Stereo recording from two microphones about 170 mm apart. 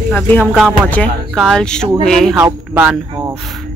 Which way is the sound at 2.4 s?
10° right (ahead or behind).